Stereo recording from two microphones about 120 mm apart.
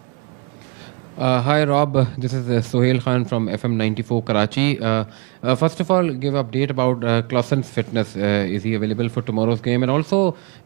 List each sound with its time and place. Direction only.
1.2 s a man's voice: 20° right (ahead or behind)